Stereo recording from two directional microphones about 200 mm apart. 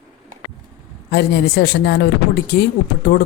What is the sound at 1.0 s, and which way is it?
Speech, 55° left (ahead or behind).